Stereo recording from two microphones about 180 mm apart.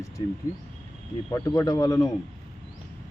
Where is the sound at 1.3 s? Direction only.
20° left (ahead or behind).